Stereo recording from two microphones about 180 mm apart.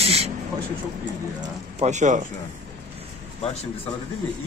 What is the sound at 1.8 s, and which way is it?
Speech, 40° right (ahead or behind).